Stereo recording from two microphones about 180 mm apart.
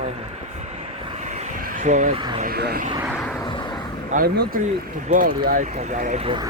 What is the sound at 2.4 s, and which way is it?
Vehicle, 60° right (ahead or behind).